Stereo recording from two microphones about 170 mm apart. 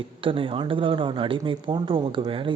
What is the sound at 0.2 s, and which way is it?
Speech, 30° right (ahead or behind).